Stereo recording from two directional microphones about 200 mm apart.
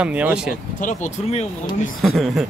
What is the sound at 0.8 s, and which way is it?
Speech, 35° left (ahead or behind).